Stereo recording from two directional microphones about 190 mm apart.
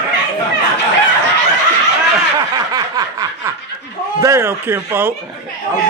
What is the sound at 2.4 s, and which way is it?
Snicker, 20° right (ahead or behind).